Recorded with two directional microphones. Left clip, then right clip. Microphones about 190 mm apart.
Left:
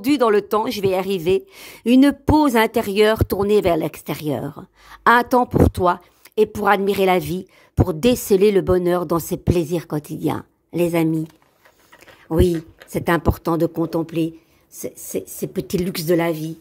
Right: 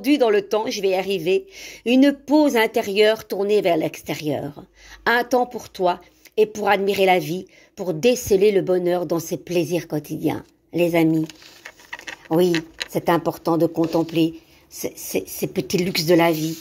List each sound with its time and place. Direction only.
0.0 s a man's voice: 50° left (ahead or behind)
12.3 s a man's voice: 60° left (ahead or behind); by 16.5 s 40° left (ahead or behind)